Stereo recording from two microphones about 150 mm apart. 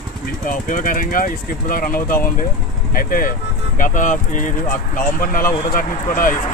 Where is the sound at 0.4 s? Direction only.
60° left (ahead or behind).